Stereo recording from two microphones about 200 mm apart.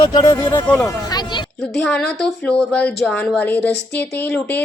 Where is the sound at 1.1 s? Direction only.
20° left (ahead or behind).